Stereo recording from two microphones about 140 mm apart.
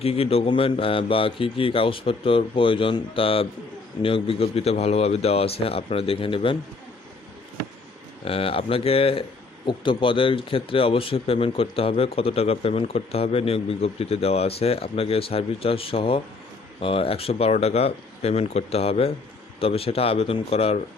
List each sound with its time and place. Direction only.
0.0 s a man's voice: 45° left (ahead or behind)
8.2 s a man's voice: 40° left (ahead or behind)